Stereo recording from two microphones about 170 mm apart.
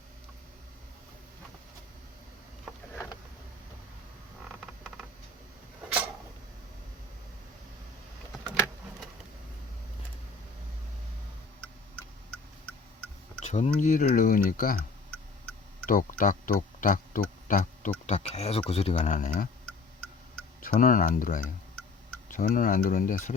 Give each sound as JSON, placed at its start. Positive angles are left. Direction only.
{"t": 4.4, "sound": "a sound", "side_deg": 0}
{"t": 13.4, "sound": "speech", "side_deg": 45}
{"t": 15.9, "sound": "speech", "side_deg": 55}
{"t": 20.6, "sound": "speech", "side_deg": 55}